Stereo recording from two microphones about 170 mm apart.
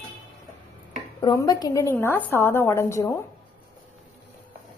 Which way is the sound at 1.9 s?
10° left (ahead or behind).